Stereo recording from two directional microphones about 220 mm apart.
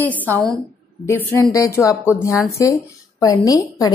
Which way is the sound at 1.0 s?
10° left (ahead or behind).